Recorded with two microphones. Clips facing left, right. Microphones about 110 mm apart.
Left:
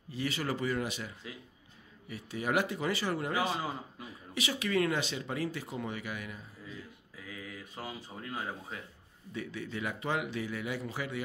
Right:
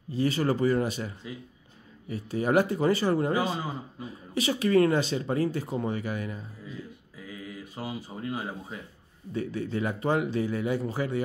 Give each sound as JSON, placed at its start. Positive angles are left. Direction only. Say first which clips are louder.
{"t": 0.1, "sound": "speech", "louder": "right 8 dB", "side_deg": -35}
{"t": 3.4, "sound": "a man's voice", "louder": "right 3 dB", "side_deg": 5}
{"t": 4.0, "sound": "speech", "louder": "right 9 dB", "side_deg": -35}
{"t": 7.2, "sound": "speech", "louder": "right 5 dB", "side_deg": -5}
{"t": 9.3, "sound": "speech", "louder": "right 8 dB", "side_deg": -40}